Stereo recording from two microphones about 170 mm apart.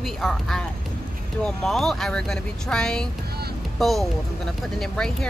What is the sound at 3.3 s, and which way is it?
Boat, 65° right (ahead or behind).